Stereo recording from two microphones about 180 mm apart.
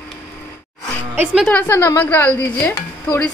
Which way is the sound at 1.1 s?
10° right (ahead or behind).